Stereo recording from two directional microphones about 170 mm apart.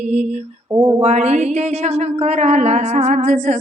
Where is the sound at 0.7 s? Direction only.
25° right (ahead or behind).